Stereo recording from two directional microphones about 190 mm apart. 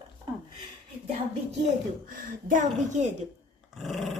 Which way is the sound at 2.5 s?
40° right (ahead or behind).